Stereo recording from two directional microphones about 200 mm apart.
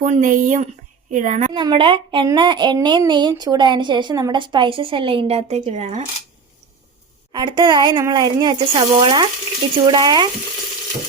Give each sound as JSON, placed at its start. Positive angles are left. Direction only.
{"t": 0.0, "sound": "speech", "side_deg": -40}
{"t": 1.5, "sound": "speech", "side_deg": -25}
{"t": 7.3, "sound": "speech", "side_deg": -25}